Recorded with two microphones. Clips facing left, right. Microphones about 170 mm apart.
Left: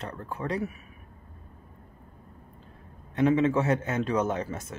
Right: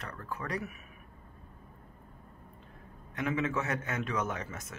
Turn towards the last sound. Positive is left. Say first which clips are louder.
# left 7 dB
turn(degrees=30)  # may be behind; listen again after turning